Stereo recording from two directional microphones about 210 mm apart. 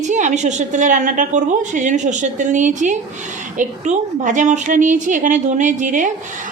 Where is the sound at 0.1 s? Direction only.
35° right (ahead or behind).